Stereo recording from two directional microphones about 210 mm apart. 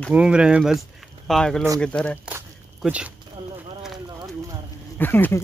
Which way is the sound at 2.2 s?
5° right (ahead or behind).